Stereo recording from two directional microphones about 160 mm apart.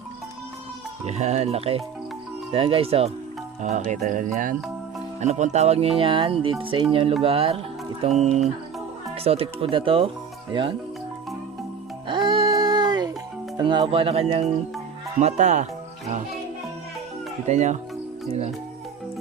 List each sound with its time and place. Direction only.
1.0 s speech: 45° right (ahead or behind)
3.6 s speech: 50° right (ahead or behind); by 10.8 s 30° right (ahead or behind)
12.0 s music: 30° right (ahead or behind)
13.6 s speech: 30° right (ahead or behind); by 15.6 s 45° right (ahead or behind)
17.4 s speech: 45° right (ahead or behind)